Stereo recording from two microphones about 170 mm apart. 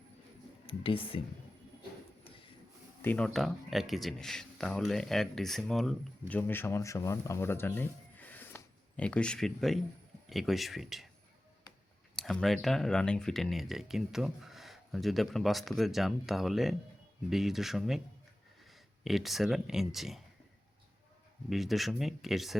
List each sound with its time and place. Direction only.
0.7 s speech: 30° left (ahead or behind)
3.0 s speech: 10° left (ahead or behind)
12.1 s speech: 5° left (ahead or behind)
21.5 s speech: centre (ahead or behind)